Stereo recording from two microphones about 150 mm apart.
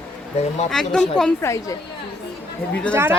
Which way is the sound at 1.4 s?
20° left (ahead or behind).